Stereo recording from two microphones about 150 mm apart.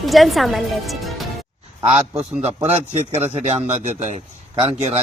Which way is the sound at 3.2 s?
50° right (ahead or behind).